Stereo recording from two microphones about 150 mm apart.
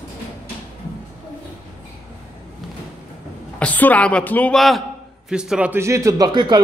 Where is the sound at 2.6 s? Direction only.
Centre (ahead or behind).